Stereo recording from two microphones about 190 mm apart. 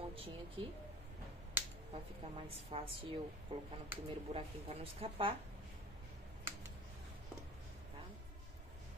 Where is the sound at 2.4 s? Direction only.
30° right (ahead or behind).